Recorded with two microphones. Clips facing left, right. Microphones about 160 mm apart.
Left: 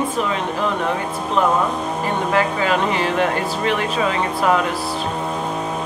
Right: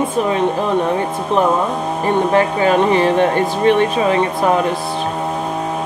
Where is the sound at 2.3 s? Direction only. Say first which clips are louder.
Right 4 dB; 20° right (ahead or behind).